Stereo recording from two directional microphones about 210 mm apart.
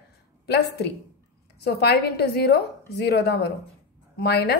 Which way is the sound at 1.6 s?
50° left (ahead or behind).